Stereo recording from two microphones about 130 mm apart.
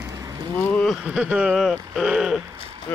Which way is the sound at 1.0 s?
5° right (ahead or behind).